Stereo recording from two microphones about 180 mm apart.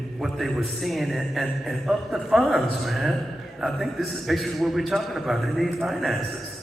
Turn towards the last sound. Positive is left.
turn(degrees=0)  # may be behind; listen again after turning